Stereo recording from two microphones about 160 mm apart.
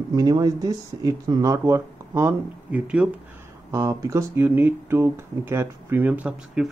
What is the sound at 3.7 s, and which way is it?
Speech, 20° right (ahead or behind).